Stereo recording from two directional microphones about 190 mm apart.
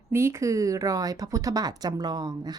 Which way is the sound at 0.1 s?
15° right (ahead or behind).